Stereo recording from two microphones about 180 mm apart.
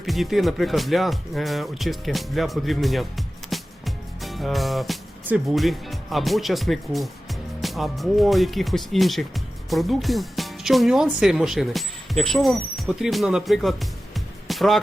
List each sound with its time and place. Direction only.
0.0 s speech: centre (ahead or behind)